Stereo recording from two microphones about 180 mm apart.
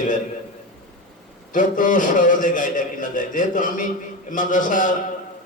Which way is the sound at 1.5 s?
45° left (ahead or behind).